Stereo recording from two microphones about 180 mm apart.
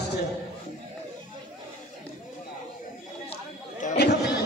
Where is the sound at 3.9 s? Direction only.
65° left (ahead or behind).